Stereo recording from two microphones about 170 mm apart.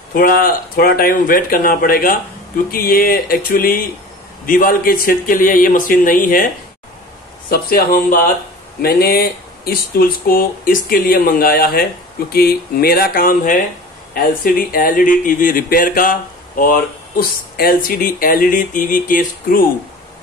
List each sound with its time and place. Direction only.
0.1 s speech: 60° left (ahead or behind)